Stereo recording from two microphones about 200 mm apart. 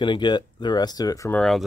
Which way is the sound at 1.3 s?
Centre (ahead or behind).